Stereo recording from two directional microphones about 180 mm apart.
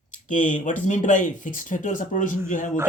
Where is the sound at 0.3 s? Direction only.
45° left (ahead or behind).